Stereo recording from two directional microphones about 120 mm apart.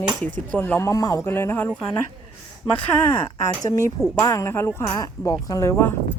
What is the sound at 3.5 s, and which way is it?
Speech, 30° left (ahead or behind).